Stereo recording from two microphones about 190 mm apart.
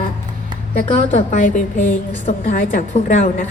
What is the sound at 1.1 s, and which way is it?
A woman's voice, 40° left (ahead or behind).